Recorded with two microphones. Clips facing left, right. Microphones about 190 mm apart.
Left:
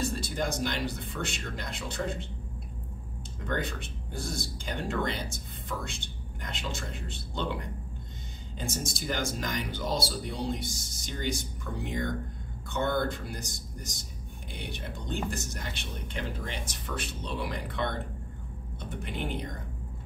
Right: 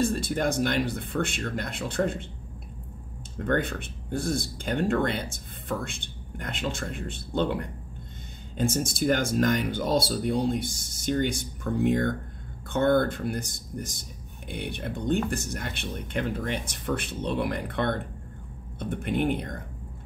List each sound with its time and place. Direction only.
0.0 s speech: 55° right (ahead or behind)
3.3 s speech: 55° right (ahead or behind)
8.5 s speech: 55° right (ahead or behind)